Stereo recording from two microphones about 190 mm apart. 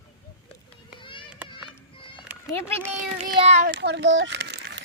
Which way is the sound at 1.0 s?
25° left (ahead or behind).